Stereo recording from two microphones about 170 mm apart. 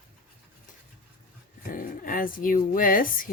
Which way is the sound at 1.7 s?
55° left (ahead or behind).